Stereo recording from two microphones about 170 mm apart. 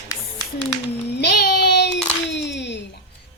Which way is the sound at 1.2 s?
70° left (ahead or behind).